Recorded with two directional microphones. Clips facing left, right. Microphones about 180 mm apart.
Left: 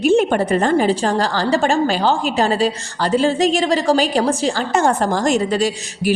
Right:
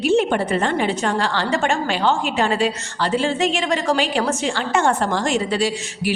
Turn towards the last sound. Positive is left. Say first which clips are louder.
# left 3 dB
turn(degrees=40)  # may be behind; listen again after turning